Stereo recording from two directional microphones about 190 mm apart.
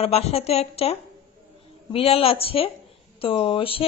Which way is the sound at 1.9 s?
30° left (ahead or behind).